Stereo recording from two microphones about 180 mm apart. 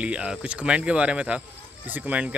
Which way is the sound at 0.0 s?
5° right (ahead or behind).